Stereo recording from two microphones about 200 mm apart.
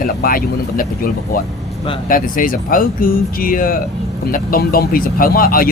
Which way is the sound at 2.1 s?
45° left (ahead or behind).